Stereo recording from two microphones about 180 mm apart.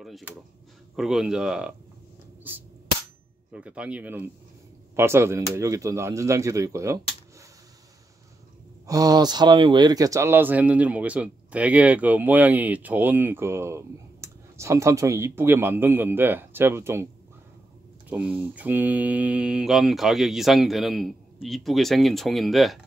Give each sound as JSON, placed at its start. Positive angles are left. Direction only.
{"t": 0.0, "sound": "speech", "side_deg": -5}
{"t": 3.5, "sound": "speech", "side_deg": -5}
{"t": 8.8, "sound": "speech", "side_deg": -20}
{"t": 18.1, "sound": "speech", "side_deg": -10}